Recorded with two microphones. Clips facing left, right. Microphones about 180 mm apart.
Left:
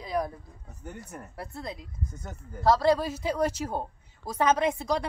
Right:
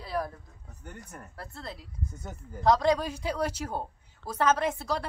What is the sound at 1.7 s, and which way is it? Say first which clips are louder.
A woman's voice: left 2 dB; 5° right (ahead or behind).